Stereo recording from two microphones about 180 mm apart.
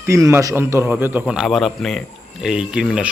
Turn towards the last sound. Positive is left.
turn(degrees=-5)  # may be behind; listen again after turning